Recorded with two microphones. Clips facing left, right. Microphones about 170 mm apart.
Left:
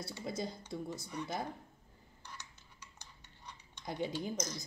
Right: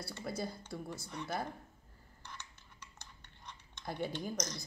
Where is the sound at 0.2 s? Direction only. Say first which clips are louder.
Even; 20° left (ahead or behind).